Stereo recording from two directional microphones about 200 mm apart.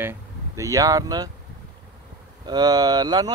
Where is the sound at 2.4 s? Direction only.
20° right (ahead or behind).